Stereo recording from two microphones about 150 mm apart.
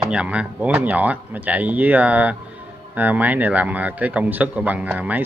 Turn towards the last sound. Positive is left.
turn(degrees=-10)  # may be behind; listen again after turning